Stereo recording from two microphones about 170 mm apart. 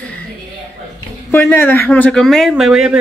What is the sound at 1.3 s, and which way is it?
Speech, 15° left (ahead or behind).